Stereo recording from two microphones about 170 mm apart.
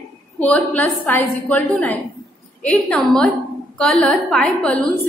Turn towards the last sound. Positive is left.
turn(degrees=5)  # may be behind; listen again after turning